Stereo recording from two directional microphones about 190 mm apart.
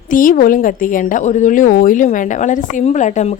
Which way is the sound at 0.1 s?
45° left (ahead or behind).